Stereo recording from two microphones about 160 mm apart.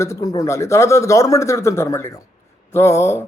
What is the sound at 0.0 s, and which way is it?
Speech, 20° left (ahead or behind).